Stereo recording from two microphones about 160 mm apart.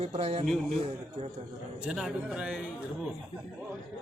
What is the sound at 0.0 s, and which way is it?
Speech, 40° right (ahead or behind).